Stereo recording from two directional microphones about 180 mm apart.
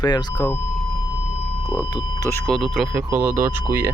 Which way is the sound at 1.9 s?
20° left (ahead or behind).